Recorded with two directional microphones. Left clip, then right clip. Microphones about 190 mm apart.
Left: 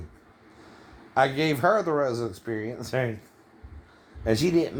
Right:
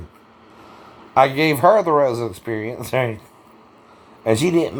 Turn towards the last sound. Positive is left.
turn(degrees=-20)  # may be behind; listen again after turning